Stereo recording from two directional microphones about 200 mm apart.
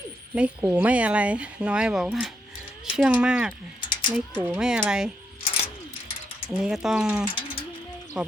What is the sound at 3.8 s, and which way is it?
Mechanisms, 25° left (ahead or behind).